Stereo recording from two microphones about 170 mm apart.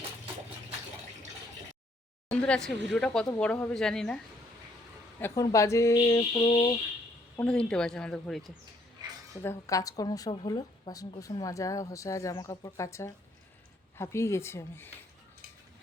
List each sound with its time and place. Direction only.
2.3 s speech: 5° left (ahead or behind)
5.2 s speech: 20° left (ahead or behind)
6.3 s a sound: 30° left (ahead or behind)
7.3 s speech: 5° left (ahead or behind)
9.0 s a sound: 25° right (ahead or behind)
9.4 s speech: 15° left (ahead or behind)